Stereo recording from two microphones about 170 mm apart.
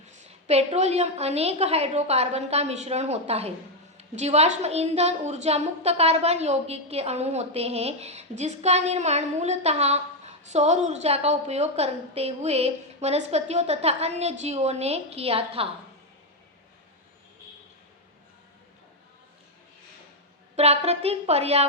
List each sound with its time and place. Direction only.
0.3 s a woman's voice: 40° right (ahead or behind)
20.6 s a woman's voice: 40° right (ahead or behind)